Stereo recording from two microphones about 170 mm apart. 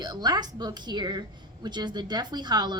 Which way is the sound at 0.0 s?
25° right (ahead or behind).